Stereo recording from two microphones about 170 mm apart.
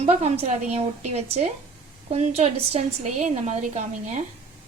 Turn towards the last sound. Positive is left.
turn(degrees=-45)  # may be behind; listen again after turning